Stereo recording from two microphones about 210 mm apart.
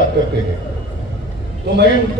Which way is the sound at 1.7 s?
55° right (ahead or behind).